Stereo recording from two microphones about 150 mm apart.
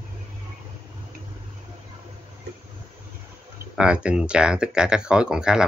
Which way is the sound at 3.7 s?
5° right (ahead or behind).